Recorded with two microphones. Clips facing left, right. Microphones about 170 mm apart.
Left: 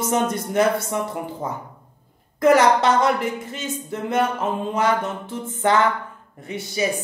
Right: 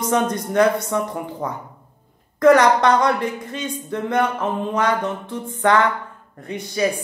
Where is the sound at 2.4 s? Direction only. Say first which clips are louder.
Right 2 dB; 10° left (ahead or behind).